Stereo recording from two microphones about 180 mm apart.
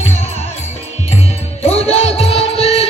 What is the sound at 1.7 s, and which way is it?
Music, 35° left (ahead or behind).